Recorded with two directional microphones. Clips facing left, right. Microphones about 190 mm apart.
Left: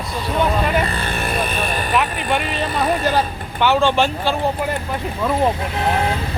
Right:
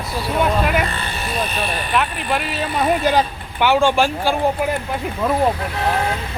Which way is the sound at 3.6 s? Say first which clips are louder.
Right 1 dB; 10° right (ahead or behind).